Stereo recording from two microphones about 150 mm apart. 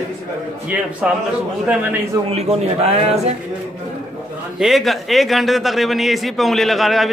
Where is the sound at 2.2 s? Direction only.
45° right (ahead or behind).